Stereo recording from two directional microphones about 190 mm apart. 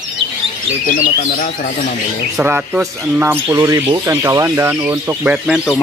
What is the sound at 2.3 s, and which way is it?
Speech, 10° right (ahead or behind).